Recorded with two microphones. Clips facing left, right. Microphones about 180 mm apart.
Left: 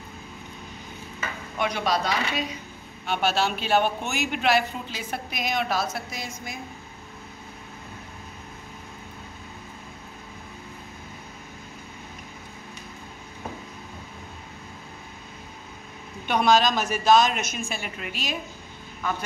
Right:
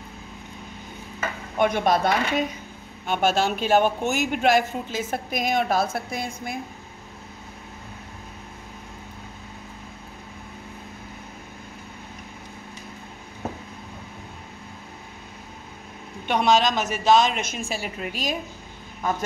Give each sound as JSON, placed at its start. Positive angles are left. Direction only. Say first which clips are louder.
{"t": 1.6, "sound": "a woman's voice", "louder": "right 5 dB", "side_deg": -50}
{"t": 16.3, "sound": "a woman's voice", "louder": "even", "side_deg": -25}